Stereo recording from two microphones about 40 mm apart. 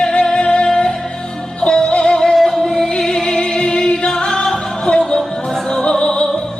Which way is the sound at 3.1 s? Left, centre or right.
Centre.